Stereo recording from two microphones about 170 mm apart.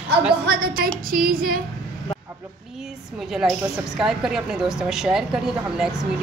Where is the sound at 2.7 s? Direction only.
Centre (ahead or behind).